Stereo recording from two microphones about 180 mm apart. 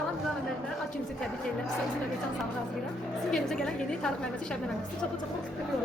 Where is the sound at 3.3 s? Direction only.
5° left (ahead or behind).